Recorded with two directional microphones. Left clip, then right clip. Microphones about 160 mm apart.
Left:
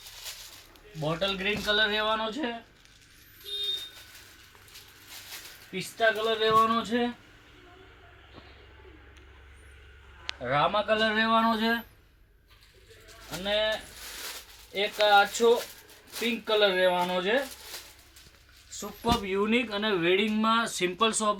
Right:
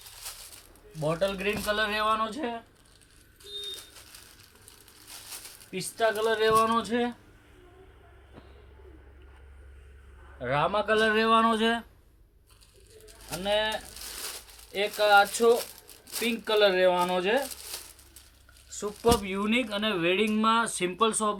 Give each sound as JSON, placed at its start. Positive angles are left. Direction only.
{"t": 0.9, "sound": "speech", "side_deg": -10}
{"t": 5.7, "sound": "speech", "side_deg": -10}
{"t": 10.4, "sound": "speech", "side_deg": -15}
{"t": 13.4, "sound": "speech", "side_deg": -20}
{"t": 19.2, "sound": "speech", "side_deg": -45}